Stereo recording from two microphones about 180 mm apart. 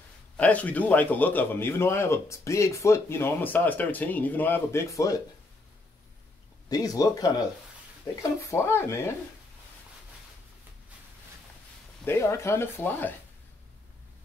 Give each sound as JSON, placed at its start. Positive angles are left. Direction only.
{"t": 0.4, "sound": "a man's voice", "side_deg": 10}
{"t": 6.7, "sound": "a man's voice", "side_deg": 20}
{"t": 12.0, "sound": "a man's voice", "side_deg": 15}